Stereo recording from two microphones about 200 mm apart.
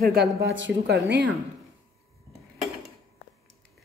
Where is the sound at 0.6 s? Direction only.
60° right (ahead or behind).